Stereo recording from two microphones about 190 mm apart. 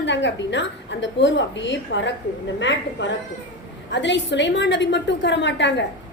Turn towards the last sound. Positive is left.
turn(degrees=70)  # may be behind; listen again after turning